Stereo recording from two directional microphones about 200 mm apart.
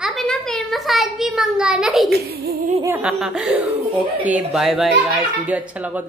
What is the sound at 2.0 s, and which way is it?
Speech, 50° right (ahead or behind).